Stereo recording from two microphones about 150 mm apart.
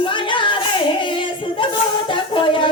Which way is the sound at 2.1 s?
35° left (ahead or behind).